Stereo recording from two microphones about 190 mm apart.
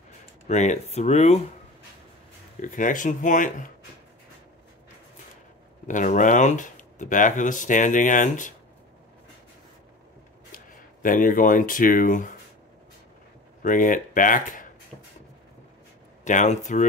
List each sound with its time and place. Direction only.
0.5 s speech: 35° left (ahead or behind)
2.6 s speech: 40° left (ahead or behind)
5.9 s speech: 40° left (ahead or behind)
10.5 s speech: 45° left (ahead or behind)
13.6 s speech: 45° left (ahead or behind)
16.3 s speech: 40° left (ahead or behind)